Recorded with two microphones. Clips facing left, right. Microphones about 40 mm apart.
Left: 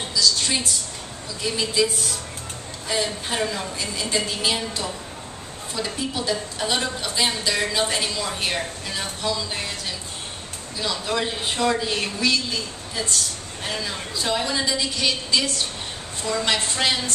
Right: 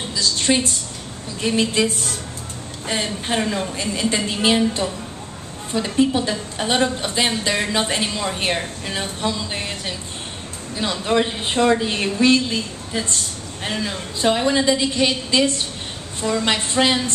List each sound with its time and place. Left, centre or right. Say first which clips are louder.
0.1 s a woman's voice: right 3 dB; right
5.7 s a woman's voice: right 10 dB; right